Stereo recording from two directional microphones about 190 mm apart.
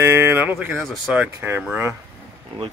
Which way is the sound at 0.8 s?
5° right (ahead or behind).